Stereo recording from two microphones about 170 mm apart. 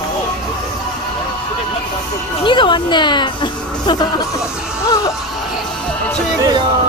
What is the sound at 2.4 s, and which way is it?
Music, 30° left (ahead or behind).